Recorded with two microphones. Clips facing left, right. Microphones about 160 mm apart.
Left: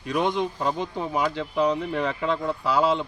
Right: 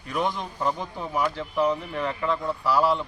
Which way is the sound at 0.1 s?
20° left (ahead or behind).